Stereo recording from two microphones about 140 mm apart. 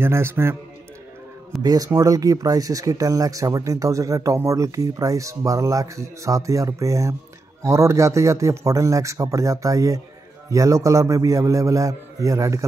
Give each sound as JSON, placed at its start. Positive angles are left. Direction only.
{"t": 0.0, "sound": "a man's voice", "side_deg": -15}
{"t": 1.6, "sound": "speech", "side_deg": -25}